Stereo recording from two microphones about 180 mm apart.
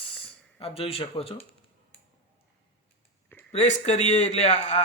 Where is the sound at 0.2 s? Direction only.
30° left (ahead or behind).